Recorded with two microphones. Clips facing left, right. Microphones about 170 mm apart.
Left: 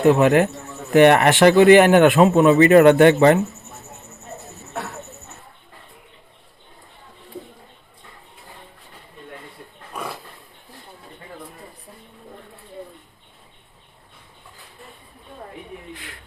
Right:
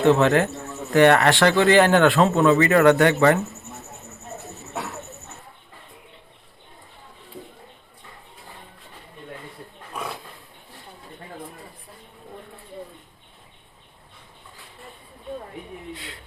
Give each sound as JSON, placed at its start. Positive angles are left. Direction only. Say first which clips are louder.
{"t": 0.0, "sound": "a man's voice", "louder": "left 3 dB", "side_deg": 15}